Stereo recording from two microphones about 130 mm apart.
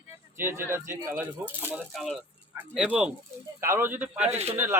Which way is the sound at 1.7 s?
Centre (ahead or behind).